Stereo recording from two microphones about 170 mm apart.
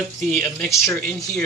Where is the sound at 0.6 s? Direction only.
15° left (ahead or behind).